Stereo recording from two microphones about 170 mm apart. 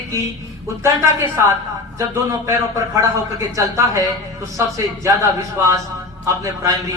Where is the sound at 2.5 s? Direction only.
20° right (ahead or behind).